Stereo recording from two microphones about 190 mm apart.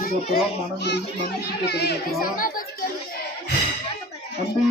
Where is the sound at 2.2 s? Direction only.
50° left (ahead or behind).